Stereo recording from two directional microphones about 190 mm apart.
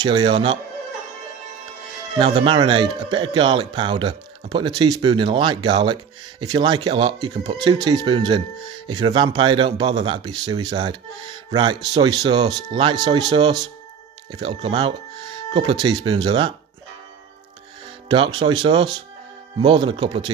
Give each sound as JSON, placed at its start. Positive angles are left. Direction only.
{"t": 0.0, "sound": "speech", "side_deg": -25}
{"t": 2.1, "sound": "speech", "side_deg": -30}
{"t": 18.0, "sound": "speech", "side_deg": -25}